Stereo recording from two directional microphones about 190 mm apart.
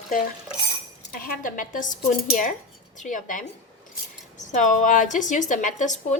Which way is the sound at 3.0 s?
40° left (ahead or behind).